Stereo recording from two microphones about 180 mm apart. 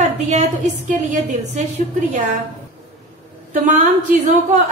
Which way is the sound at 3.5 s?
45° right (ahead or behind).